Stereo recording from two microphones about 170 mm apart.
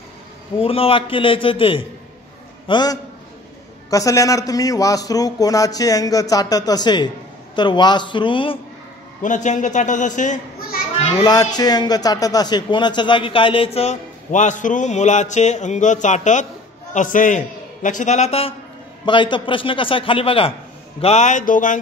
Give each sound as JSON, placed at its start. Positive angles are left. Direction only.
{"t": 0.6, "sound": "a man's voice", "side_deg": 35}
{"t": 9.2, "sound": "a child's voice", "side_deg": 45}
{"t": 11.2, "sound": "a man's voice", "side_deg": 25}
{"t": 21.0, "sound": "speech", "side_deg": 40}